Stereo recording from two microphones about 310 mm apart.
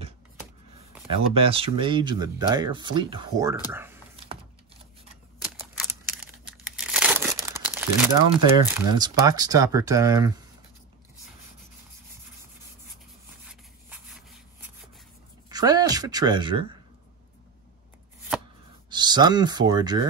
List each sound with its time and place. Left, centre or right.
1.3 s speech: centre
5.6 s crumpling: centre
13.5 s rub: centre
15.5 s speech: centre
18.9 s speech: centre